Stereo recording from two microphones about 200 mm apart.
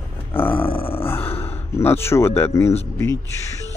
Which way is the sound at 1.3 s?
30° left (ahead or behind).